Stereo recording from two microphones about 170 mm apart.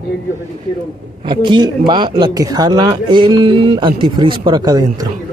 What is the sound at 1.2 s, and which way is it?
Speech, 25° right (ahead or behind).